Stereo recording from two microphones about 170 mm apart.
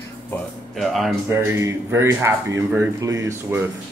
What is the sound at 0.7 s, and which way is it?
Speech, centre (ahead or behind).